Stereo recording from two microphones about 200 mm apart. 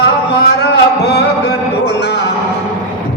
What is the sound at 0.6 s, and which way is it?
Music, 55° left (ahead or behind).